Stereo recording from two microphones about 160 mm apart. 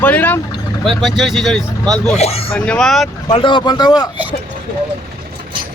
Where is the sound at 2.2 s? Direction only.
40° left (ahead or behind).